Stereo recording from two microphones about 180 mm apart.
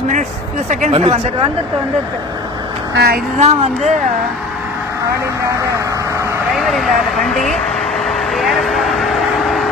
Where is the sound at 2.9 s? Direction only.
60° right (ahead or behind).